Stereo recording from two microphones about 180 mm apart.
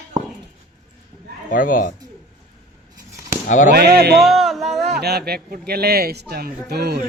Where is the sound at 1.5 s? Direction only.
50° left (ahead or behind).